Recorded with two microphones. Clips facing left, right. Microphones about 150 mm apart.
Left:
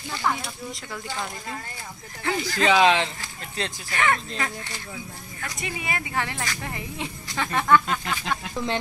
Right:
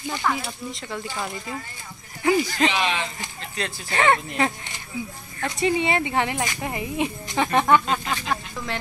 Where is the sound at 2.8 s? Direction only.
90° left.